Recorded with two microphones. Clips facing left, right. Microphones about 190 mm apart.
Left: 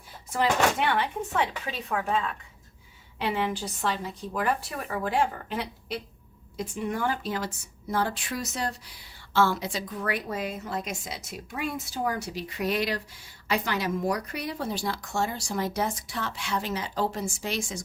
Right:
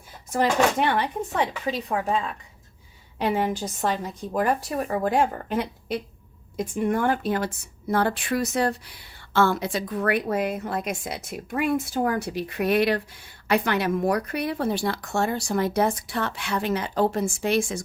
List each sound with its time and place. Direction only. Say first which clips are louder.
0.3 s a woman's voice: right 3 dB; 45° right (ahead or behind)
1.9 s a woman's voice: right 1 dB; 30° right (ahead or behind)
3.2 s a woman's voice: right 4 dB; 45° right (ahead or behind)
5.0 s a woman's voice: right 2 dB; 45° right (ahead or behind)